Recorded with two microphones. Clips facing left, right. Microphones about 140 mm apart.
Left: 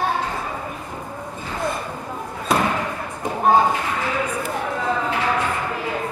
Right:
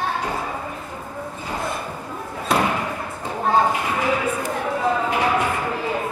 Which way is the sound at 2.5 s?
Centre (ahead or behind).